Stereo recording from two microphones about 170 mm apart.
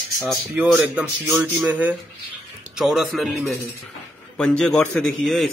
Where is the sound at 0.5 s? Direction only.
5° right (ahead or behind).